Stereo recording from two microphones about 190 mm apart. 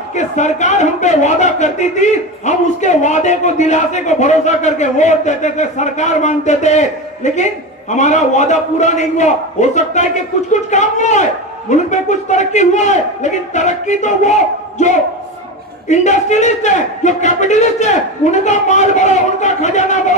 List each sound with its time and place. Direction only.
0.1 s a man's voice: 40° left (ahead or behind)